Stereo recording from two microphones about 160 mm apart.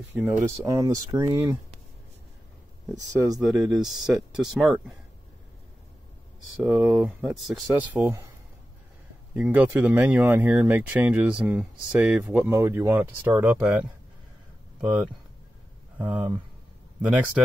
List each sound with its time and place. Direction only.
0.1 s speech: 10° right (ahead or behind)
0.7 s speech: 20° right (ahead or behind)
3.3 s speech: centre (ahead or behind)
6.7 s speech: centre (ahead or behind)
9.3 s speech: 10° right (ahead or behind)
14.8 s speech: 10° right (ahead or behind)